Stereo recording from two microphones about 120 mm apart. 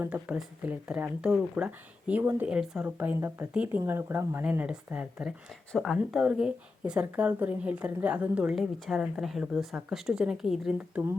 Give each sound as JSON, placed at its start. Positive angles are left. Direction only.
{"t": 0.0, "sound": "speech", "side_deg": -15}
{"t": 4.4, "sound": "speech", "side_deg": -10}
{"t": 5.7, "sound": "speech", "side_deg": 0}